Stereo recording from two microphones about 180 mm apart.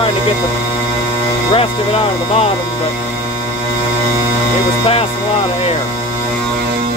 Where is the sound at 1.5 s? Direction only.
30° left (ahead or behind).